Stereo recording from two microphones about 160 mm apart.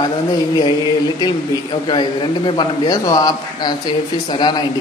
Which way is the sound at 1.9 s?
30° left (ahead or behind).